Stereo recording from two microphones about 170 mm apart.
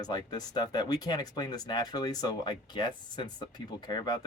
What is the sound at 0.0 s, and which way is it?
Speech, 25° left (ahead or behind).